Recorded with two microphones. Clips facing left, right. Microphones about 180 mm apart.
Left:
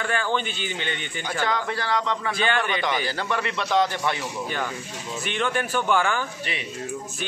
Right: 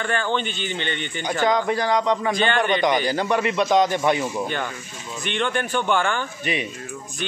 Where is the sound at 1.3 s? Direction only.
15° right (ahead or behind).